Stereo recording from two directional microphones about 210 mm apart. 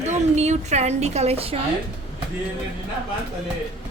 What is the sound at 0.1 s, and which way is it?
A woman's voice, 35° right (ahead or behind).